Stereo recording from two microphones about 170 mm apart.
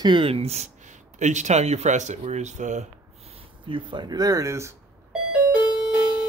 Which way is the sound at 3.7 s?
25° right (ahead or behind).